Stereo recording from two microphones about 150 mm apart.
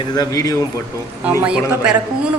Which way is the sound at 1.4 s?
5° right (ahead or behind).